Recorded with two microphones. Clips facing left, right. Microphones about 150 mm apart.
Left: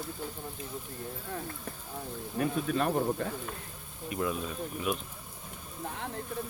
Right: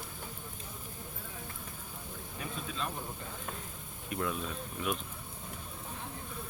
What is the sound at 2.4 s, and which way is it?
Speech, 60° left (ahead or behind).